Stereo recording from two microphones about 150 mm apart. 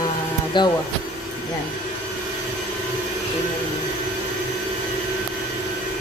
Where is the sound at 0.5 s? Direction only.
30° left (ahead or behind).